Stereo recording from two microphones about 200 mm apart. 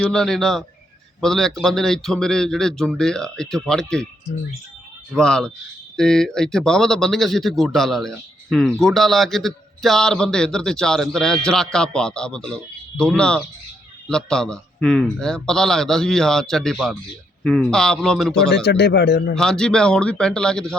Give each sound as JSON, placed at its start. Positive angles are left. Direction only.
{"t": 0.0, "sound": "speech", "side_deg": 5}
{"t": 5.1, "sound": "speech", "side_deg": 5}
{"t": 18.4, "sound": "a man's voice", "side_deg": 55}
{"t": 19.3, "sound": "speech", "side_deg": 5}